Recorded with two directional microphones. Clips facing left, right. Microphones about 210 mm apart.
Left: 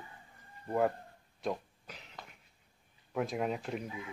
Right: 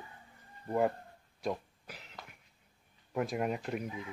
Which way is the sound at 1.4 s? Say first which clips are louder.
Even; 5° right (ahead or behind).